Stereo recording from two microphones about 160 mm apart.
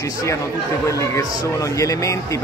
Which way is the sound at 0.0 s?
20° left (ahead or behind).